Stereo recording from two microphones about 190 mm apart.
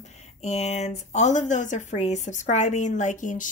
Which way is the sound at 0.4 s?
35° left (ahead or behind).